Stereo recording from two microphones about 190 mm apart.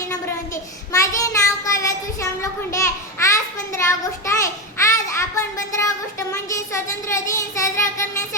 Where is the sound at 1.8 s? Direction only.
15° left (ahead or behind).